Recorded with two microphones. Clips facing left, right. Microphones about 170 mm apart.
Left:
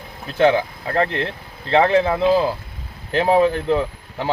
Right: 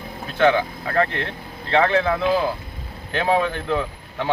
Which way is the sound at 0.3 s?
35° left (ahead or behind).